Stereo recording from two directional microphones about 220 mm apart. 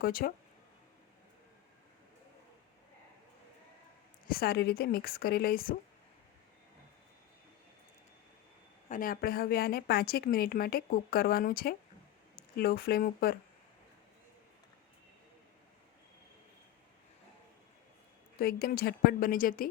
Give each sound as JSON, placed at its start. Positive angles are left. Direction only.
{"t": 0.0, "sound": "a woman's voice", "side_deg": 40}
{"t": 4.3, "sound": "a woman's voice", "side_deg": 45}
{"t": 8.9, "sound": "a woman's voice", "side_deg": 40}
{"t": 18.3, "sound": "a woman's voice", "side_deg": 45}